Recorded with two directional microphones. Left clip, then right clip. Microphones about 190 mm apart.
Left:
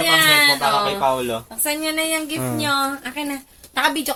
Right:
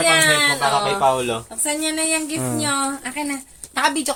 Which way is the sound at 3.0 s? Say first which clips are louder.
Right 1 dB; 20° right (ahead or behind).